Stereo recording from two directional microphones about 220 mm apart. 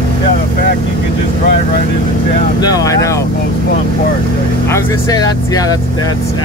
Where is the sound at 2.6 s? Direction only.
15° left (ahead or behind).